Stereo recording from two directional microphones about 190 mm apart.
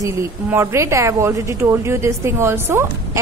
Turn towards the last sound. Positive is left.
turn(degrees=-15)  # may be behind; listen again after turning